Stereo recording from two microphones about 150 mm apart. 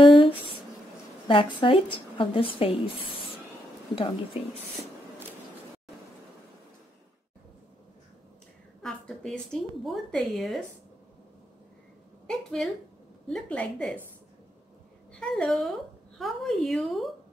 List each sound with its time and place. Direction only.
0.0 s a sound: 35° left (ahead or behind)
1.2 s a woman's voice: 35° left (ahead or behind)
3.9 s a woman's voice: 35° left (ahead or behind)
8.8 s a woman's voice: 5° left (ahead or behind)
12.3 s a woman's voice: 5° left (ahead or behind)
15.1 s a woman's voice: 5° left (ahead or behind)